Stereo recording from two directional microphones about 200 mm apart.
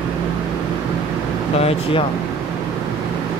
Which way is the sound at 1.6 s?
30° left (ahead or behind).